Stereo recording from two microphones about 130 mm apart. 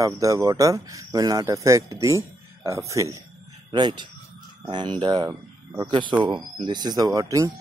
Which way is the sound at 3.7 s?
35° right (ahead or behind).